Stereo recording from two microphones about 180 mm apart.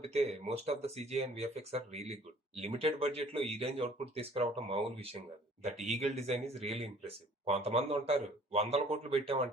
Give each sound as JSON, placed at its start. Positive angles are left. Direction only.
{"t": 0.1, "sound": "speech", "side_deg": -35}